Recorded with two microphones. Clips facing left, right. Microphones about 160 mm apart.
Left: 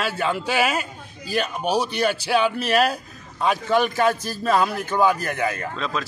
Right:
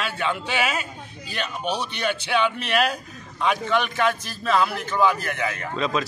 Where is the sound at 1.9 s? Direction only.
40° left (ahead or behind).